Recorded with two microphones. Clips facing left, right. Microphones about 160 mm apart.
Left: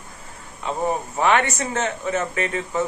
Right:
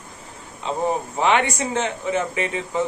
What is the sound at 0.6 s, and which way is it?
Speech, 15° right (ahead or behind).